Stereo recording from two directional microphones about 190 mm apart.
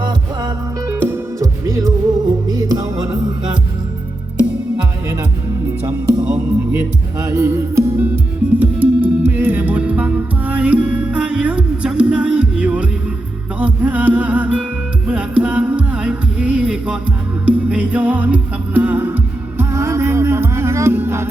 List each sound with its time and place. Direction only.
0.0 s music: 20° right (ahead or behind)
5.6 s music: 10° right (ahead or behind)